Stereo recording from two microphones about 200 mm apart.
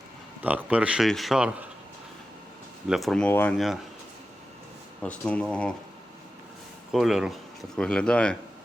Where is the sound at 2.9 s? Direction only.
Centre (ahead or behind).